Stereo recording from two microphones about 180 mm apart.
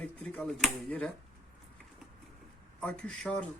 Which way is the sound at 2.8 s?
5° left (ahead or behind).